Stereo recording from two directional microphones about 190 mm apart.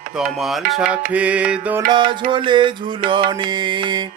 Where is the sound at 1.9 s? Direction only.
25° right (ahead or behind).